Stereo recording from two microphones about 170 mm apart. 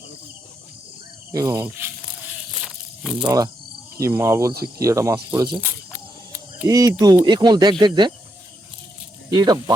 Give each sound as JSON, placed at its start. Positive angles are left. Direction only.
{"t": 1.3, "sound": "speech", "side_deg": -20}
{"t": 2.6, "sound": "snake", "side_deg": 0}
{"t": 3.2, "sound": "speech", "side_deg": -20}
{"t": 5.5, "sound": "speech", "side_deg": -10}
{"t": 6.7, "sound": "speech", "side_deg": -20}
{"t": 9.3, "sound": "speech", "side_deg": -25}